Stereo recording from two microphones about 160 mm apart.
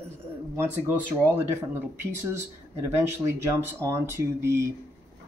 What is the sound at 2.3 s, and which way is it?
Speech, 15° right (ahead or behind).